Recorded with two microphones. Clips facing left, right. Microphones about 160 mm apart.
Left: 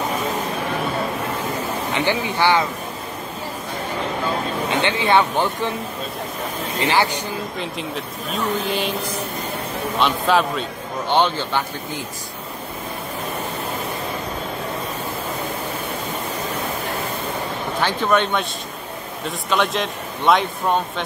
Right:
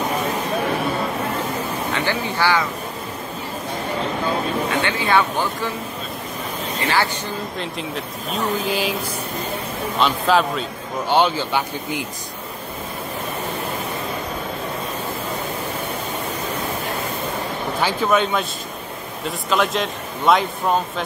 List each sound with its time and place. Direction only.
2.0 s speech: 20° left (ahead or behind)
4.6 s speech: 20° left (ahead or behind)
6.8 s speech: 15° left (ahead or behind)
7.5 s a man's voice: centre (ahead or behind)
9.9 s a man's voice: centre (ahead or behind)
17.7 s a man's voice: 5° right (ahead or behind)